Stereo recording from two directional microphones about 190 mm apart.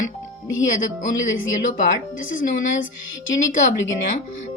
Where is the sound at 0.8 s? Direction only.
40° left (ahead or behind).